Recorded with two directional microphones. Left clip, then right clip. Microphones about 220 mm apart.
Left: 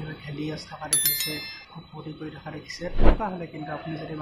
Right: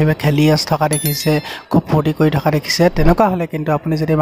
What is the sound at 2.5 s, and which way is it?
Speech, 50° right (ahead or behind).